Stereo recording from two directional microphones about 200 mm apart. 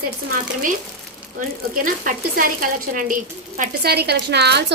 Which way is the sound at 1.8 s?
45° right (ahead or behind).